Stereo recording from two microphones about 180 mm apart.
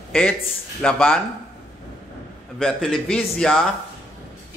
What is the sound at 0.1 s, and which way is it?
Speech, 5° left (ahead or behind).